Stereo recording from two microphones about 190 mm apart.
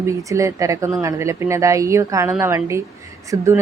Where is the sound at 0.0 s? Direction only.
15° right (ahead or behind).